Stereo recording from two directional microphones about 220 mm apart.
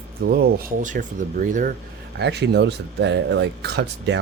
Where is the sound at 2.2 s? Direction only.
50° right (ahead or behind).